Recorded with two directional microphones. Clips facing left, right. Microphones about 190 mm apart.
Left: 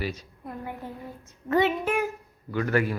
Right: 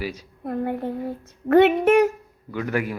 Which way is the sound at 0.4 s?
60° right (ahead or behind).